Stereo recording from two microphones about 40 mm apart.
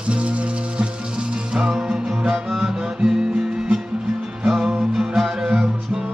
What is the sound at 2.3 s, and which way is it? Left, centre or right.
Music, centre.